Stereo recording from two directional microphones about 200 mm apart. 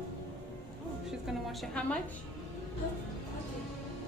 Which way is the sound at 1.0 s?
Centre (ahead or behind).